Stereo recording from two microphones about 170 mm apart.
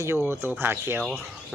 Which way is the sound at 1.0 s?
5° left (ahead or behind).